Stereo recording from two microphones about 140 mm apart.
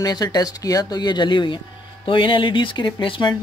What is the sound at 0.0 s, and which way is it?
Speech, 30° left (ahead or behind).